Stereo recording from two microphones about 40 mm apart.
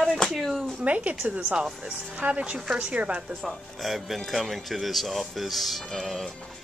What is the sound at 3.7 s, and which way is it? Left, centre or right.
Speech, centre.